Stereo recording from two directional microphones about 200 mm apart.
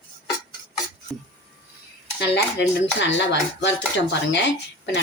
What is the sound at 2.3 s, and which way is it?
Speech, 60° left (ahead or behind).